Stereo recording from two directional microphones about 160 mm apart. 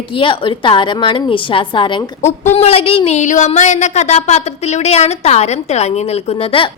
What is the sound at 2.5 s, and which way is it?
A woman's voice, 40° left (ahead or behind).